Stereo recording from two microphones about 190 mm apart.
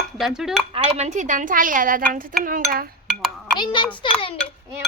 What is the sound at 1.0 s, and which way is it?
A woman's voice, 40° right (ahead or behind).